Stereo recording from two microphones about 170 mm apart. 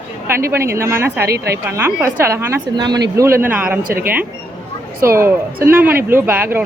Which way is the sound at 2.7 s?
25° right (ahead or behind).